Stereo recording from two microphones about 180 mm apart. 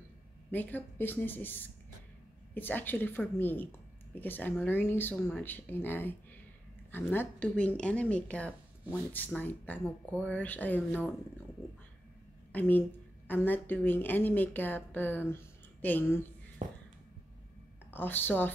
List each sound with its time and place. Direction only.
0.5 s a woman's voice: 10° left (ahead or behind)
12.5 s a woman's voice: 10° left (ahead or behind)
16.6 s music: 45° right (ahead or behind)
17.9 s a woman's voice: 10° left (ahead or behind)